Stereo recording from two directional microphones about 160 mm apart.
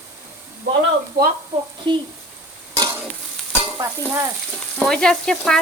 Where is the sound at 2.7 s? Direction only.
20° right (ahead or behind).